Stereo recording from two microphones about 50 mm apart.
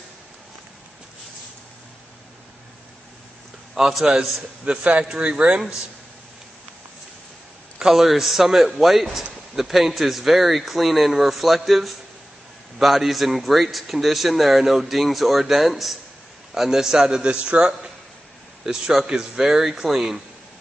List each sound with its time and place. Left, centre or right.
3.7 s speech: centre
7.8 s a man's voice: centre; by 17.9 s right
18.7 s speech: centre